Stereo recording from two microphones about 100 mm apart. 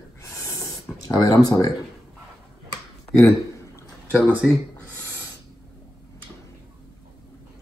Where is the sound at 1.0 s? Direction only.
35° left (ahead or behind).